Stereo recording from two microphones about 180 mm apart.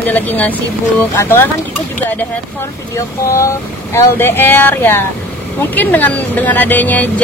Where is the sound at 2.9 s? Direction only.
15° left (ahead or behind).